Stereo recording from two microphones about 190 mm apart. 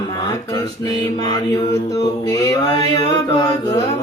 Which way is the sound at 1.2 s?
20° left (ahead or behind).